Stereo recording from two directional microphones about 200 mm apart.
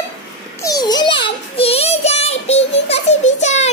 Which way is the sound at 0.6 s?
20° left (ahead or behind).